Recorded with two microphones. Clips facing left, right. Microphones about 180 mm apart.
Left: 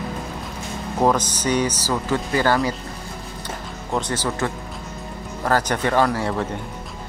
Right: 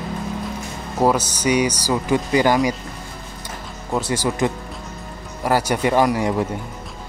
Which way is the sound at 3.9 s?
10° right (ahead or behind).